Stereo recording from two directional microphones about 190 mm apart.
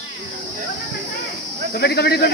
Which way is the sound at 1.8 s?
60° left (ahead or behind).